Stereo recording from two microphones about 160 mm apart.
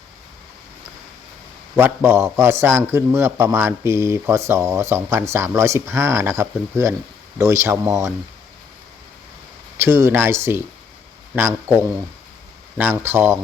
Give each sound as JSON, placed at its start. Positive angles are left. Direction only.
{"t": 1.7, "sound": "a man's voice", "side_deg": -15}
{"t": 9.7, "sound": "a man's voice", "side_deg": -15}